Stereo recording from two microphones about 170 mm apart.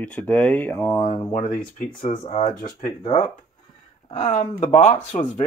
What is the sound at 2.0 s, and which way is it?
Speech, 35° left (ahead or behind).